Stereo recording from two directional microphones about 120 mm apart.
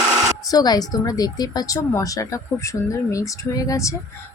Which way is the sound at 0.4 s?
35° left (ahead or behind).